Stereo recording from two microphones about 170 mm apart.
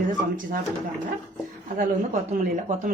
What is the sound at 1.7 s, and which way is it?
Speech, 45° right (ahead or behind).